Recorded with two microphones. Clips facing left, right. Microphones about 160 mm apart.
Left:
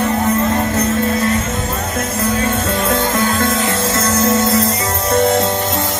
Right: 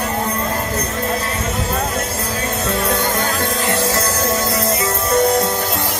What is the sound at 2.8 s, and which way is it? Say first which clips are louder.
Music: left 2 dB; 25° left (ahead or behind).